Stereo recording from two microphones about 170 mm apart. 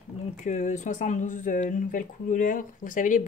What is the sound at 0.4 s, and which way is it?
Speech, 45° left (ahead or behind).